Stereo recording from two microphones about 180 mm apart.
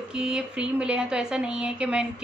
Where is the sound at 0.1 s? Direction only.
5° right (ahead or behind).